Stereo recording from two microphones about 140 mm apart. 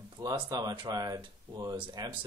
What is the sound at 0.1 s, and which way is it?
Speech, 30° right (ahead or behind).